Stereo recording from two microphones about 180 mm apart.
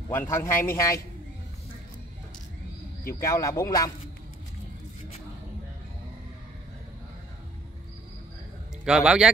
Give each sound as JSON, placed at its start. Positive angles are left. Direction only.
{"t": 0.1, "sound": "a man's voice", "side_deg": 15}
{"t": 3.1, "sound": "a man's voice", "side_deg": 15}
{"t": 8.8, "sound": "a man's voice", "side_deg": -5}